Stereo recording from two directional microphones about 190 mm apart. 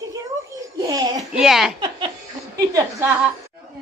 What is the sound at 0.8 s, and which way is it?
Babbling, 20° right (ahead or behind).